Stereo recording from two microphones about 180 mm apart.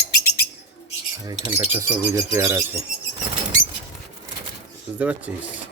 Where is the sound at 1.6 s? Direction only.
10° right (ahead or behind).